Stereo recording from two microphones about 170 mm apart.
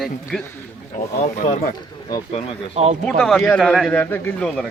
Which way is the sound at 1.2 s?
45° left (ahead or behind).